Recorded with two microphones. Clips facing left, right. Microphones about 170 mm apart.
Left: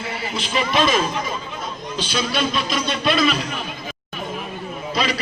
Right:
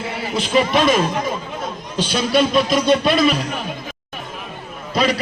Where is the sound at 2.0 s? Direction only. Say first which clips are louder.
Right 6 dB; 50° right (ahead or behind).